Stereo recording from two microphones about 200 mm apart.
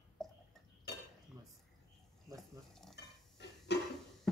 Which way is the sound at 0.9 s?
55° left (ahead or behind).